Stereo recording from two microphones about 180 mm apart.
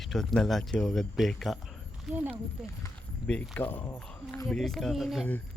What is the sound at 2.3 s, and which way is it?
Speech, 15° left (ahead or behind).